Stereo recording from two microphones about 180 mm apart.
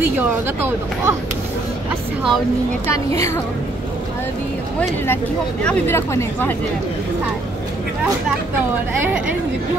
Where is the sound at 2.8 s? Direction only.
15° left (ahead or behind).